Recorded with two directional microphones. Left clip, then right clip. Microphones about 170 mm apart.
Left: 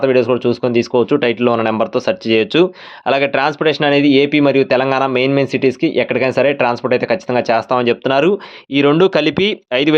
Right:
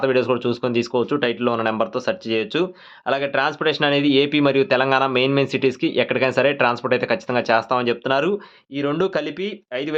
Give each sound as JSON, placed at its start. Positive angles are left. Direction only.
{"t": 0.0, "sound": "speech", "side_deg": 25}
{"t": 8.7, "sound": "speech", "side_deg": 50}